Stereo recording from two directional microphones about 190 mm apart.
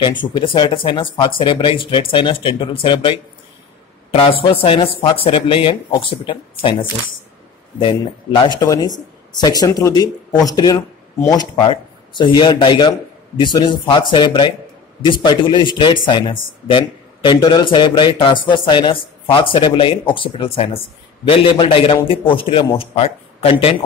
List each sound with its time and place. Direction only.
0.0 s speech: 25° left (ahead or behind)
8.4 s speech: 20° left (ahead or behind)